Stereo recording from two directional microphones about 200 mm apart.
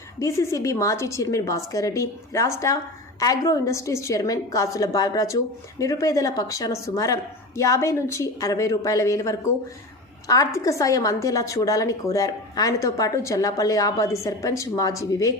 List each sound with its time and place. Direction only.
0.2 s a woman's voice: 15° left (ahead or behind)